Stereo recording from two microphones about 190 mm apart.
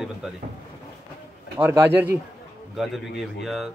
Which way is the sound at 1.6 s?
10° right (ahead or behind).